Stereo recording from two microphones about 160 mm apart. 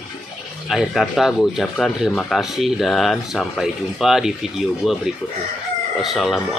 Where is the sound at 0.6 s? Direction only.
Centre (ahead or behind).